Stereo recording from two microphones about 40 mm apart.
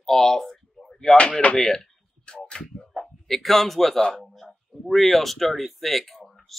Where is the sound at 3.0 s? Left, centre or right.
Centre.